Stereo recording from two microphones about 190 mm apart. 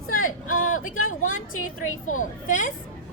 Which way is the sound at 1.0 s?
90° left.